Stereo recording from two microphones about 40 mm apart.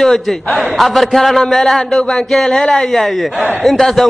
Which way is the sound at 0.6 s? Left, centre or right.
Centre.